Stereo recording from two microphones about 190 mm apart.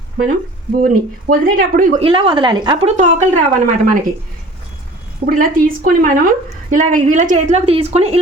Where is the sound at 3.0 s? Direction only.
40° right (ahead or behind).